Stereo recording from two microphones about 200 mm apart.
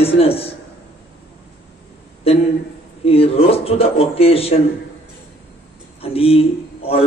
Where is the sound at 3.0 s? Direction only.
30° left (ahead or behind).